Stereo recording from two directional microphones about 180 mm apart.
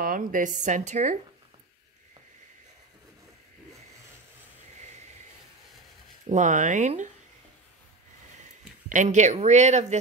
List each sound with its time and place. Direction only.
0.0 s a woman's voice: 50° right (ahead or behind)
6.2 s a woman's voice: 45° right (ahead or behind)
8.4 s speech: 45° right (ahead or behind)